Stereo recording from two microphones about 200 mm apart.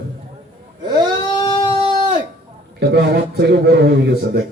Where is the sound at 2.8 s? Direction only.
55° right (ahead or behind).